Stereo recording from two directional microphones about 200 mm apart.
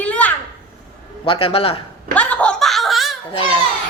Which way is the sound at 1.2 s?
25° left (ahead or behind).